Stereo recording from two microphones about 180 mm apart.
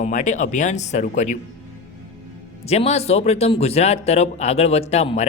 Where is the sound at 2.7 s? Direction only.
35° left (ahead or behind).